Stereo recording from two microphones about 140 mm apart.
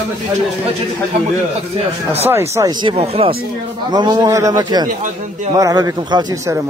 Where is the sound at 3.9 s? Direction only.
30° right (ahead or behind).